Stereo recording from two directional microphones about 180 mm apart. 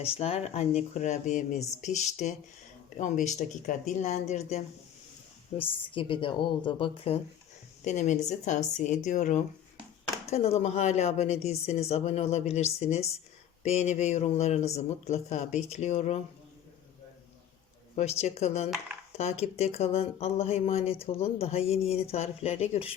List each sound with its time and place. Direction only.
0.0 s a woman's voice: 35° left (ahead or behind)
7.9 s a woman's voice: 40° left (ahead or behind)
17.9 s speech: 35° left (ahead or behind)